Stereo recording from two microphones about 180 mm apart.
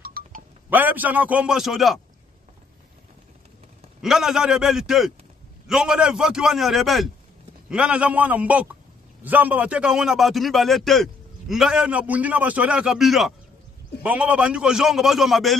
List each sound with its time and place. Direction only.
0.0 s chink: 55° right (ahead or behind)
0.7 s a man's voice: 10° right (ahead or behind)
4.0 s a man's voice: centre (ahead or behind)